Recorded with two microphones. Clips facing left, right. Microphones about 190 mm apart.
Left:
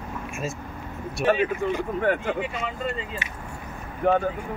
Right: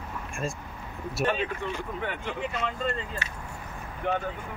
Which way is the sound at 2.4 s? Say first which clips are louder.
Left 1 dB; 5° left (ahead or behind).